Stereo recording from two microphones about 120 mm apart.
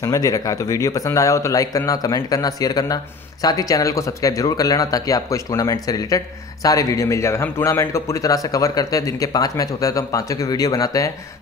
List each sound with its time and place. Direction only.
0.0 s speech: 30° left (ahead or behind)